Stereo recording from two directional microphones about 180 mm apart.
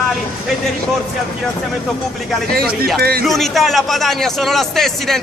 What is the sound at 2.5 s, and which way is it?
Speech, 60° right (ahead or behind).